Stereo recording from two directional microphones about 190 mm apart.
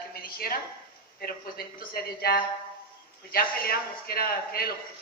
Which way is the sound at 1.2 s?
50° left (ahead or behind).